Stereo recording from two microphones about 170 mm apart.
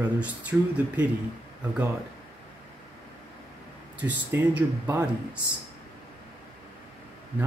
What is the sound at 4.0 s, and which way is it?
Speech, 10° right (ahead or behind).